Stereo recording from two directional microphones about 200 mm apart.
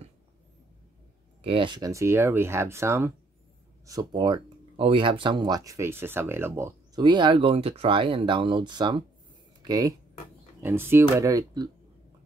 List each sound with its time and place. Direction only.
1.4 s speech: 25° right (ahead or behind)